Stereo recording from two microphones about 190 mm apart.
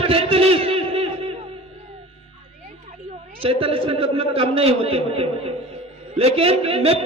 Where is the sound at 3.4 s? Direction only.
30° right (ahead or behind).